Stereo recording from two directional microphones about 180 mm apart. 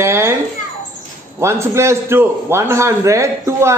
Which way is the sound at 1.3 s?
15° right (ahead or behind).